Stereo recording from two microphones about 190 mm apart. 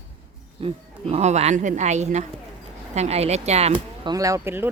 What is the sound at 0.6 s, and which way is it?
A woman's voice, 35° right (ahead or behind).